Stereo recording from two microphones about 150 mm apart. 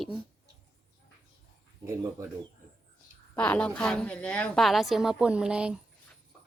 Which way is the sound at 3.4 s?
5° left (ahead or behind).